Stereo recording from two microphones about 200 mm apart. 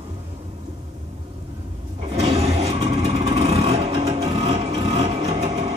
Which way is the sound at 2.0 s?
30° right (ahead or behind).